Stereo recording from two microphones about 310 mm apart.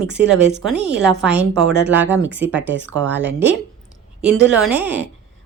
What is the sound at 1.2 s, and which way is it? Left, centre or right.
Speech, centre.